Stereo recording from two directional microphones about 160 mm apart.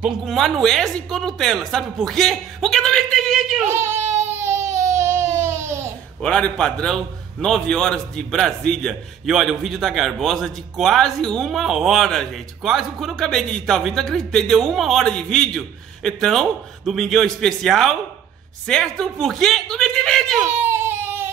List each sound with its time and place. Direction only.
0.0 s a man's voice: centre (ahead or behind)
3.7 s a child's voice: 15° right (ahead or behind)
4.0 s child singing: 45° right (ahead or behind)
4.4 s baby cry: 15° right (ahead or behind)
4.7 s babbling: 20° right (ahead or behind)
6.2 s a man's voice: 5° left (ahead or behind)
20.6 s baby cry: 15° right (ahead or behind)